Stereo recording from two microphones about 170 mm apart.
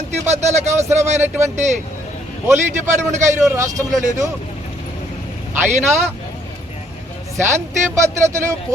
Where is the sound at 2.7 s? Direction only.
45° right (ahead or behind).